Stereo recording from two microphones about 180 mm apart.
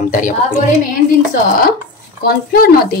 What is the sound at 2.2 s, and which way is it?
Speech, 55° left (ahead or behind).